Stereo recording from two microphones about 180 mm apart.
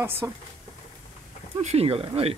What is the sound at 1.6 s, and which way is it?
Speech, 35° right (ahead or behind).